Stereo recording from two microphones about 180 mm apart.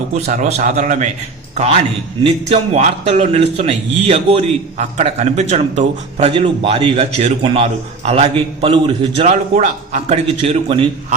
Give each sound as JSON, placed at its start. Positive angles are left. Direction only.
{"t": 0.1, "sound": "a man's voice", "side_deg": -45}
{"t": 2.2, "sound": "a man's voice", "side_deg": -35}
{"t": 6.3, "sound": "a man's voice", "side_deg": -30}